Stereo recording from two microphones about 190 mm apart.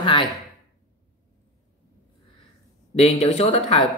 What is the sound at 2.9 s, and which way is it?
Speech, 35° left (ahead or behind).